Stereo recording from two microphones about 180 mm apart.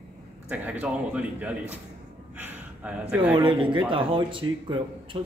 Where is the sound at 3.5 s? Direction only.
25° right (ahead or behind).